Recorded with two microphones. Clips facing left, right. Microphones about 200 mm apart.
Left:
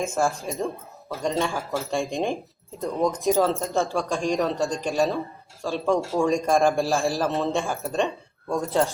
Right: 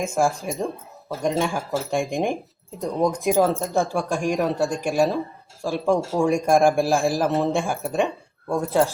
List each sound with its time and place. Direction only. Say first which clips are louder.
0.1 s speech: right 3 dB; 15° right (ahead or behind)
8.4 s speech: right 2 dB; centre (ahead or behind)